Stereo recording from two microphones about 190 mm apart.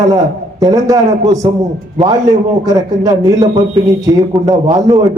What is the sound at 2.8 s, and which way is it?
Speech, 20° right (ahead or behind).